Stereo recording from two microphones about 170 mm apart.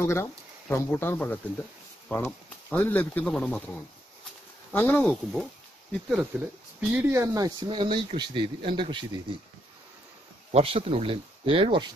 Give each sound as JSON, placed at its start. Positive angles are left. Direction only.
{"t": 0.0, "sound": "speech", "side_deg": 15}
{"t": 6.0, "sound": "speech", "side_deg": -5}
{"t": 10.5, "sound": "speech", "side_deg": -35}